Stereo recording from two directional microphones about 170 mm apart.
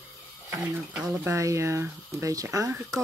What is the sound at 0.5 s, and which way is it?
Speech, 10° right (ahead or behind).